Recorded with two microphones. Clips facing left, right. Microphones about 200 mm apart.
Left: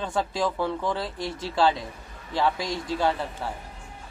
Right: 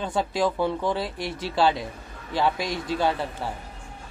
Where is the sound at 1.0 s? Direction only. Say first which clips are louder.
Right 1 dB; 25° left (ahead or behind).